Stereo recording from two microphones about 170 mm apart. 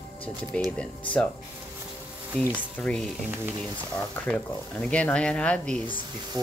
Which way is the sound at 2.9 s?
5° left (ahead or behind).